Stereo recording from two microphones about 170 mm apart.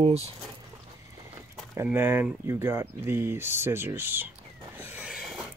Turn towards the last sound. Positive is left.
turn(degrees=-5)  # may be behind; listen again after turning